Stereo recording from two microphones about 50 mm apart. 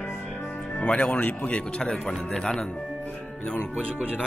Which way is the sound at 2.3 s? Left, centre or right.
Centre.